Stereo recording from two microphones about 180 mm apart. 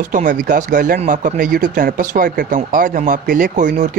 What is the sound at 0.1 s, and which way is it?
Speech, 45° right (ahead or behind).